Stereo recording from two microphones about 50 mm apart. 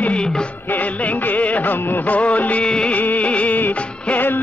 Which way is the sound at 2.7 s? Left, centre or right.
Centre.